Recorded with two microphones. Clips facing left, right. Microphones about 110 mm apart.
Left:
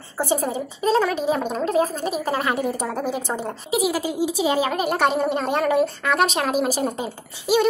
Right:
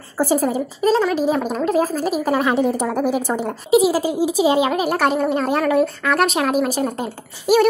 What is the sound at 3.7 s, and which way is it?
Speech, 30° right (ahead or behind).